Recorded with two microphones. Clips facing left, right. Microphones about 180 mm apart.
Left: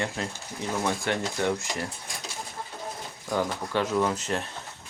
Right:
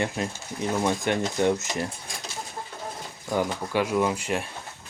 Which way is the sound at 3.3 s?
10° right (ahead or behind).